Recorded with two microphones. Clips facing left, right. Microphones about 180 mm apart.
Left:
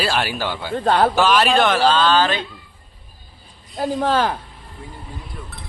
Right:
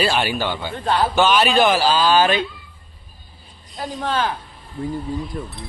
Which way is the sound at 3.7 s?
40° left (ahead or behind).